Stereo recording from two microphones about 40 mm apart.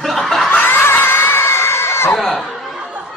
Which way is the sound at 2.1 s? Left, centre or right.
Centre.